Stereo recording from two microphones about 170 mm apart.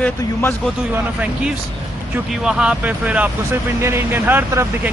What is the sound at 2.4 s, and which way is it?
Speech, 5° right (ahead or behind).